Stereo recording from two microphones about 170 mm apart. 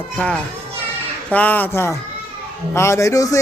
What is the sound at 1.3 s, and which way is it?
Speech, 10° left (ahead or behind).